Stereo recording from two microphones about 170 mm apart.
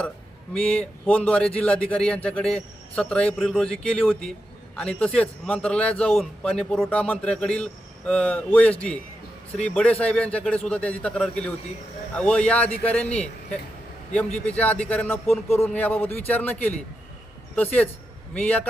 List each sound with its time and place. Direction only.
0.5 s a man's voice: 5° left (ahead or behind)
14.3 s speech: 5° left (ahead or behind)
18.3 s speech: 10° left (ahead or behind)